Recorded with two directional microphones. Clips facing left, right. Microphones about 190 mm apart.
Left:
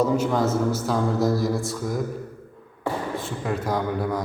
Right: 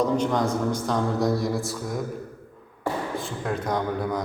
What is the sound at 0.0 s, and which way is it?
A man's voice, 5° left (ahead or behind).